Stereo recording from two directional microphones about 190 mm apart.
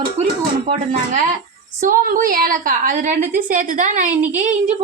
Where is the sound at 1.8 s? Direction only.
45° right (ahead or behind).